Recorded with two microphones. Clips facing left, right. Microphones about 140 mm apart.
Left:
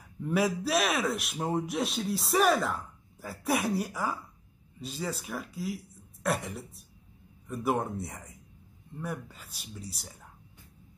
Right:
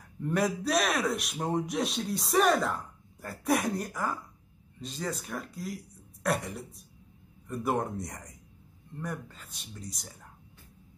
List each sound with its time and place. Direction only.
0.2 s a man's voice: centre (ahead or behind)